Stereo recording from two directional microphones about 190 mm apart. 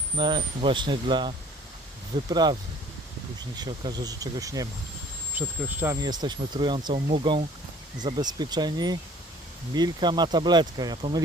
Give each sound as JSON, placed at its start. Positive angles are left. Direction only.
{"t": 0.2, "sound": "speech", "side_deg": -25}
{"t": 2.3, "sound": "speech", "side_deg": -20}